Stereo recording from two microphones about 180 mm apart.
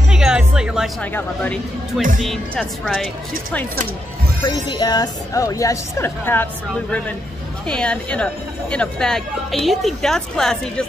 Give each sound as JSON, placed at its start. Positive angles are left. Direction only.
{"t": 0.1, "sound": "music", "side_deg": -5}
{"t": 1.1, "sound": "a woman's voice", "side_deg": 10}
{"t": 2.0, "sound": "speech", "side_deg": -50}
{"t": 2.2, "sound": "speech", "side_deg": 5}
{"t": 4.5, "sound": "a woman's voice", "side_deg": 25}